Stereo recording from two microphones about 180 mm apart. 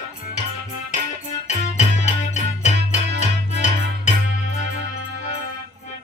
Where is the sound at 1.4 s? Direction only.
40° left (ahead or behind).